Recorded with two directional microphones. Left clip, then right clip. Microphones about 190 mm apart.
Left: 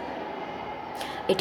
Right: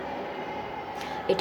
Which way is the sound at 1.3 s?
25° left (ahead or behind).